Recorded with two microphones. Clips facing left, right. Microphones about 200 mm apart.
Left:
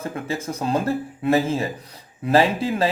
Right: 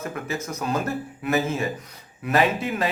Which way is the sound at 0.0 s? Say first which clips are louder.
Left 2 dB; 30° left (ahead or behind).